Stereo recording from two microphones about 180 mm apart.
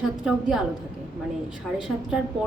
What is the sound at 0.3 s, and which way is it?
Speech, 5° right (ahead or behind).